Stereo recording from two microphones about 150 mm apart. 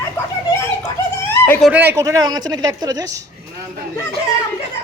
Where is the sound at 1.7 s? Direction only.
15° right (ahead or behind).